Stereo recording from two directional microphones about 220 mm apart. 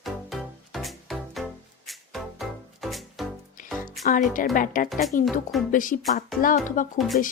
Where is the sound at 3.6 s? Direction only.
35° left (ahead or behind).